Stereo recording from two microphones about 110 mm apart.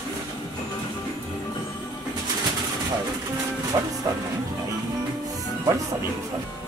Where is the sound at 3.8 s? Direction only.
30° right (ahead or behind).